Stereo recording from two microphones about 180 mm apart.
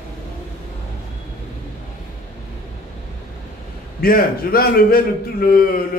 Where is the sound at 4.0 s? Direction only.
55° left (ahead or behind).